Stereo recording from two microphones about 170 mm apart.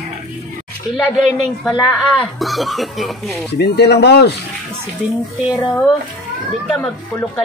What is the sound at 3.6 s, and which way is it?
Speech, 75° left (ahead or behind).